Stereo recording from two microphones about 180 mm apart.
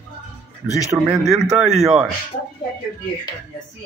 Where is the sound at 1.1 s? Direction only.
5° right (ahead or behind).